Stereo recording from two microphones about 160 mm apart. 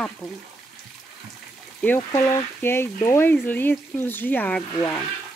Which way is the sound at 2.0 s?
20° left (ahead or behind).